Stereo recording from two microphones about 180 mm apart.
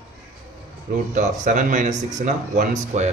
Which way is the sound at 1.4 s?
40° right (ahead or behind).